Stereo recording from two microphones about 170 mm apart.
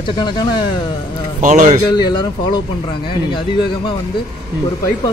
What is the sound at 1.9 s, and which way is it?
Speech, 25° left (ahead or behind).